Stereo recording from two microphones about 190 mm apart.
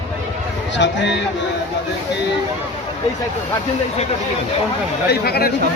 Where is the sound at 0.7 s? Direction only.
70° left (ahead or behind).